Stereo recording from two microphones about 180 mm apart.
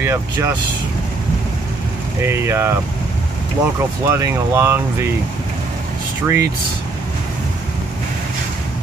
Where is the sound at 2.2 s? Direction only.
15° right (ahead or behind).